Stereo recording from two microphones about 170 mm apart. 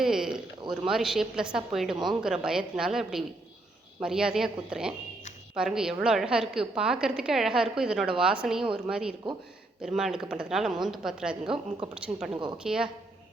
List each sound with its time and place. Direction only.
0.0 s a sound: 5° right (ahead or behind)
0.7 s a woman's voice: centre (ahead or behind)
11.4 s a woman's voice: 30° right (ahead or behind)
11.9 s a woman's voice: 5° right (ahead or behind)